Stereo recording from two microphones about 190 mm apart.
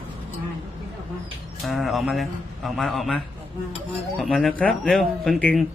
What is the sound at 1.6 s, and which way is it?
Speech, centre (ahead or behind).